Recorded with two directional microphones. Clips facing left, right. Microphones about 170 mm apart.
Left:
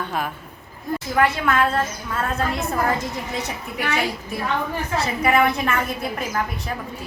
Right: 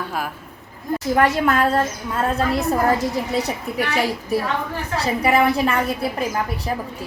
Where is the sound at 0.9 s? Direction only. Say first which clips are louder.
Right 3 dB; 40° right (ahead or behind).